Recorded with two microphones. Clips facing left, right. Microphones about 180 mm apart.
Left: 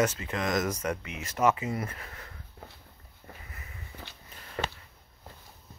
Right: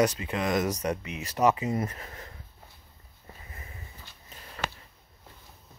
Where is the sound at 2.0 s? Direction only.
25° right (ahead or behind).